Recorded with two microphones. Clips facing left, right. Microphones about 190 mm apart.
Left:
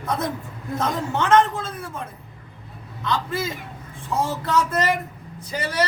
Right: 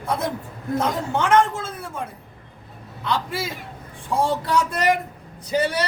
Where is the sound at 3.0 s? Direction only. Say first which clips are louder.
Even; 10° right (ahead or behind).